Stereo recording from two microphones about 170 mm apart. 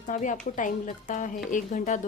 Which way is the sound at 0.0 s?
50° left (ahead or behind).